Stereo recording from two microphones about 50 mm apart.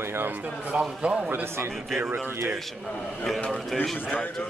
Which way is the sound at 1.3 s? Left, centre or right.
Right.